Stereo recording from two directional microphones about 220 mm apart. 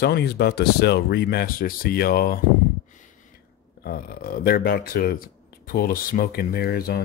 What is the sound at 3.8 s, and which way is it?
A man's voice, 40° left (ahead or behind).